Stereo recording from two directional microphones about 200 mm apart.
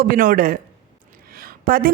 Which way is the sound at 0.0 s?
45° right (ahead or behind).